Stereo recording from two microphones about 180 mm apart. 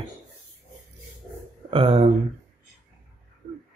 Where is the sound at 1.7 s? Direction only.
30° right (ahead or behind).